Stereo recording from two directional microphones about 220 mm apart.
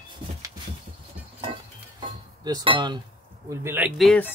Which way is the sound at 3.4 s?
10° right (ahead or behind).